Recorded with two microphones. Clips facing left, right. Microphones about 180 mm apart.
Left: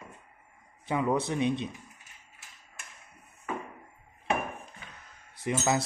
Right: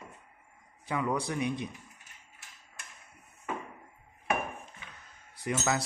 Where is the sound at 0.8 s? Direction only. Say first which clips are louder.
Left 3 dB; 25° left (ahead or behind).